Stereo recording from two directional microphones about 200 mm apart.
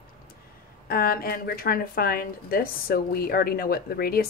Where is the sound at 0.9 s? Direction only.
50° left (ahead or behind).